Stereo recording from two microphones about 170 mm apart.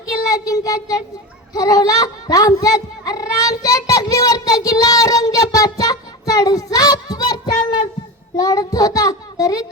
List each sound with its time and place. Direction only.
0.0 s speech: 20° left (ahead or behind)
1.5 s a sound: 20° left (ahead or behind)
8.4 s child singing: 20° left (ahead or behind)